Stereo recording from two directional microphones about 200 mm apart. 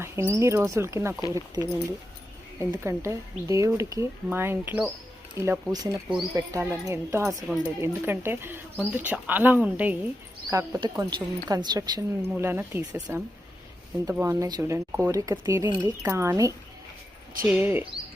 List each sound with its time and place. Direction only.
0.0 s a woman's voice: 15° right (ahead or behind)
7.4 s a woman's voice: 5° right (ahead or behind)